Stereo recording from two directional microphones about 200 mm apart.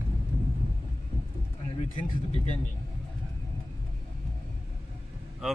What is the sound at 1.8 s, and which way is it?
Speech, 35° left (ahead or behind).